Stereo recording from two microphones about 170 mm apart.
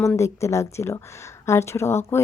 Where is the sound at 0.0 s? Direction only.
15° left (ahead or behind).